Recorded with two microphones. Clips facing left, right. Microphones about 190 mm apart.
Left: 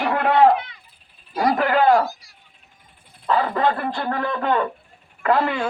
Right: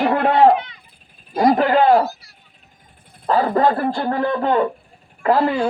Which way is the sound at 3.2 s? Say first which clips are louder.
Right 4 dB; 40° right (ahead or behind).